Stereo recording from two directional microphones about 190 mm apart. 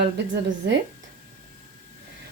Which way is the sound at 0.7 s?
65° right (ahead or behind).